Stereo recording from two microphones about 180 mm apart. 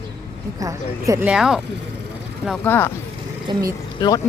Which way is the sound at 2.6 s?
10° left (ahead or behind).